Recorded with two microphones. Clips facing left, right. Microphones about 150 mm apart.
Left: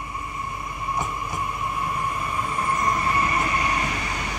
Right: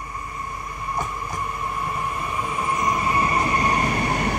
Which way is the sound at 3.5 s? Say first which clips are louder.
Right 4 dB; 45° right (ahead or behind).